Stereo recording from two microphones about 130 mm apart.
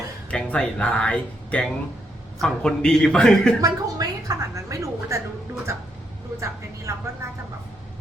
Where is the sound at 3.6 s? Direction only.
30° right (ahead or behind).